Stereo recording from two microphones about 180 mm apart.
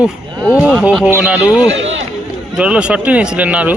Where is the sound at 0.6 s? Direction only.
5° right (ahead or behind).